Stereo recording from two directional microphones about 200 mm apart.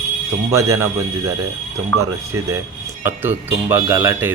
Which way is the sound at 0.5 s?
15° right (ahead or behind).